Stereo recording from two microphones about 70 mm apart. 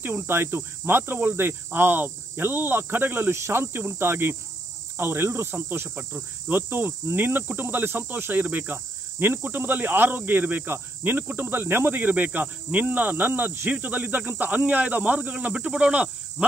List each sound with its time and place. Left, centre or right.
0.0 s speech: right
6.1 s speech: centre
6.7 s cricket: right
14.4 s speech: right